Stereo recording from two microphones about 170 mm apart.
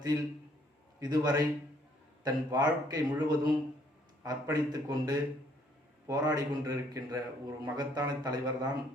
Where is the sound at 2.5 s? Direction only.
20° right (ahead or behind).